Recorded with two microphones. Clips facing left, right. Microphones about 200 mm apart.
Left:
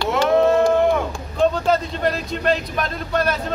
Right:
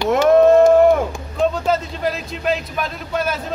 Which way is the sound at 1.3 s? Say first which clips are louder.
Left 1 dB; 5° right (ahead or behind).